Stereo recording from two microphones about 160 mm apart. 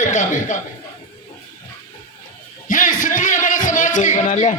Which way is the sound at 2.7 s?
55° left (ahead or behind).